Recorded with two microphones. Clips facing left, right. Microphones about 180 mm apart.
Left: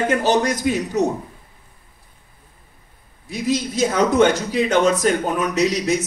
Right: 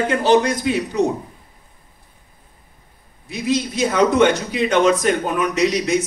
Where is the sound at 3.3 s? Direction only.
40° left (ahead or behind).